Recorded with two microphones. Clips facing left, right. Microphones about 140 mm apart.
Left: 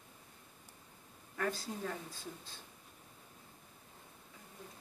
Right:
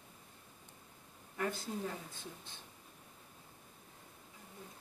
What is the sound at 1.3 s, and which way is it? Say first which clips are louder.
Speech: left 1 dB; 20° right (ahead or behind).